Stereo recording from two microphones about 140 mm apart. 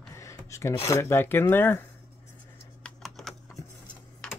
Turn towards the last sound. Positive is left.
turn(degrees=0)  # may be behind; listen again after turning